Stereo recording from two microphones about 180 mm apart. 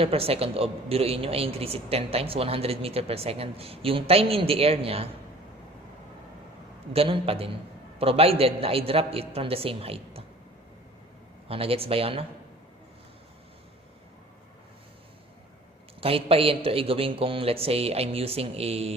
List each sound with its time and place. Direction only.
0.0 s a man's voice: 30° right (ahead or behind)
6.9 s a man's voice: 30° right (ahead or behind)
11.4 s a man's voice: 30° right (ahead or behind)
16.0 s a man's voice: 30° right (ahead or behind)